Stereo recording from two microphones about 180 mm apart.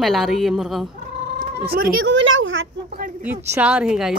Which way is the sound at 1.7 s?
55° right (ahead or behind).